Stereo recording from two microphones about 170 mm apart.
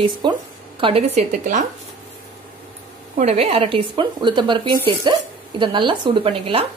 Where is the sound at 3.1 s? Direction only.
35° right (ahead or behind).